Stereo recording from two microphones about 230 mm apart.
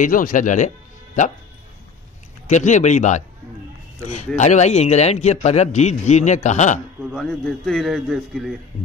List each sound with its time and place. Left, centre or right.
0.0 s a man's voice: left
2.4 s a man's voice: left
7.1 s a man's voice: centre